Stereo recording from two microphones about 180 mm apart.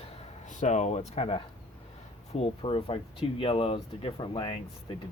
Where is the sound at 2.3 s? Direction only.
30° left (ahead or behind).